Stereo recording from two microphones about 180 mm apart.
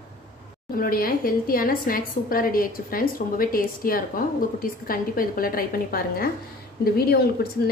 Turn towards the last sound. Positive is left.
turn(degrees=60)  # may be behind; listen again after turning